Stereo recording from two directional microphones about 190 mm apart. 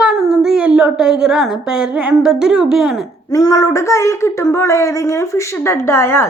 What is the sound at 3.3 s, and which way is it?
Speech, 15° left (ahead or behind).